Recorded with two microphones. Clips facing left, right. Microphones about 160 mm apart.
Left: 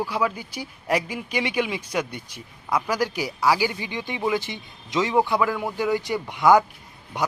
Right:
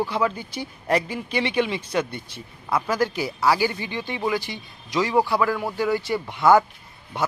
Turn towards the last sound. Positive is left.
turn(degrees=15)  # may be behind; listen again after turning